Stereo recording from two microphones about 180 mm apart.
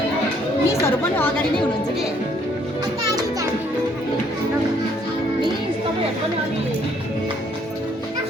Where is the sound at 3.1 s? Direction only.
20° right (ahead or behind).